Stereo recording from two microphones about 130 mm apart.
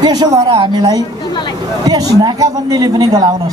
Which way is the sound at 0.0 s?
30° right (ahead or behind).